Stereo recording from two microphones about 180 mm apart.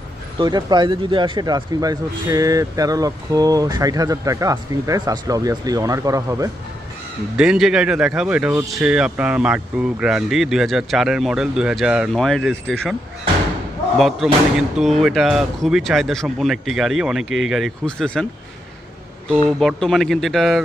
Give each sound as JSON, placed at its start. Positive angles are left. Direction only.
{"t": 0.4, "sound": "speech", "side_deg": -25}
{"t": 7.3, "sound": "speech", "side_deg": -5}
{"t": 13.9, "sound": "speech", "side_deg": 0}
{"t": 19.6, "sound": "speech", "side_deg": 0}